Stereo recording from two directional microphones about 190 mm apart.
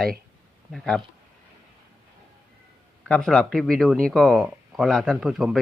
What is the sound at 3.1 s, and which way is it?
A man's voice, 5° left (ahead or behind).